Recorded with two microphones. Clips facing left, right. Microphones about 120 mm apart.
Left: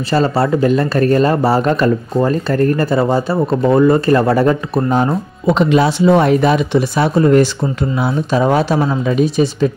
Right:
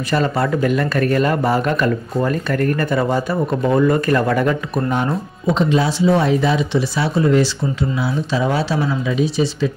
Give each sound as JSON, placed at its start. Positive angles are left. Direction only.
{"t": 0.1, "sound": "speech", "side_deg": 30}
{"t": 5.5, "sound": "speech", "side_deg": 70}